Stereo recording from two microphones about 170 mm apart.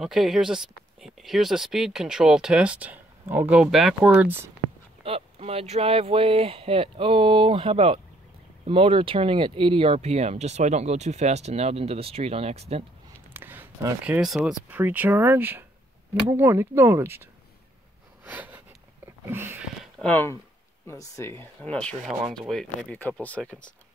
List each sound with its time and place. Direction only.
0.0 s speech: centre (ahead or behind)
5.0 s speech: 35° right (ahead or behind)
13.3 s speech: 10° right (ahead or behind)
18.2 s a sound: 10° right (ahead or behind)
19.2 s speech: 15° right (ahead or behind)
19.8 s a sound: 10° left (ahead or behind)
20.8 s speech: 15° left (ahead or behind)